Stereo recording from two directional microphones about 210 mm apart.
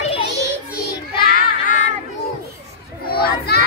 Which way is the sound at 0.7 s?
45° left (ahead or behind).